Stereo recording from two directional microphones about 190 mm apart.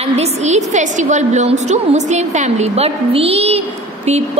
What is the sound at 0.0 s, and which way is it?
A woman's voice, 35° right (ahead or behind).